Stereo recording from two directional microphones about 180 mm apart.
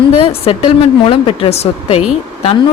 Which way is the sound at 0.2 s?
30° left (ahead or behind).